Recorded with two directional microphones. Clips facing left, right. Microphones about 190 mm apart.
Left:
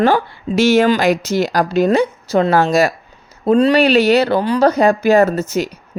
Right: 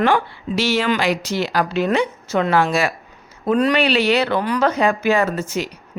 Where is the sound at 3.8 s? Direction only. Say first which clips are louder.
Left 5 dB; 40° left (ahead or behind).